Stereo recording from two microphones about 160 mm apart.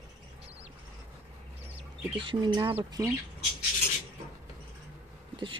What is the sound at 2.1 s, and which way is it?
Speech, 30° right (ahead or behind).